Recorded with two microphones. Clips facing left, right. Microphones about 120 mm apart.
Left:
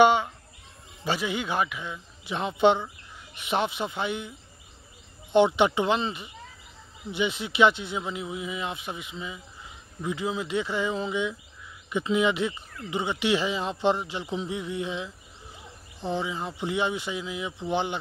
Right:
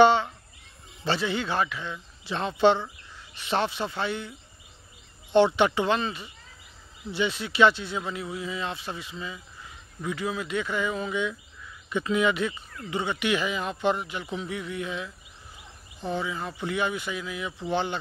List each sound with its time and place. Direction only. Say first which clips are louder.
0.0 s a sound: right 1 dB; 15° left (ahead or behind)
1.0 s speech: right 1 dB; 10° left (ahead or behind)
5.3 s speech: even; 15° left (ahead or behind)